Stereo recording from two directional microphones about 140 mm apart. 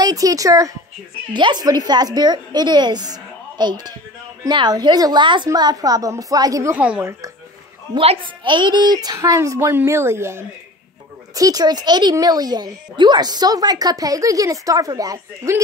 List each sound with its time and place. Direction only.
0.0 s a child's voice: 25° right (ahead or behind)
6.8 s a woman's voice: 10° right (ahead or behind)
7.9 s a child's voice: 40° right (ahead or behind); by 15.6 s 25° right (ahead or behind)